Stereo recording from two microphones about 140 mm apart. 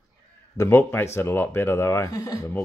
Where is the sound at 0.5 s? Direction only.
20° left (ahead or behind).